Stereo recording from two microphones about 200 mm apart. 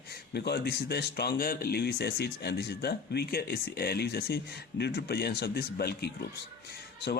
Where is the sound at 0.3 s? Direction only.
55° left (ahead or behind).